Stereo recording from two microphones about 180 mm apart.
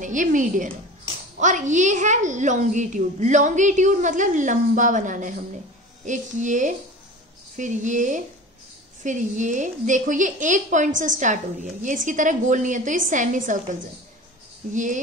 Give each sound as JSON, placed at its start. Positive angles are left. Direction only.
{"t": 0.0, "sound": "a woman's voice", "side_deg": -45}
{"t": 14.7, "sound": "a woman's voice", "side_deg": -45}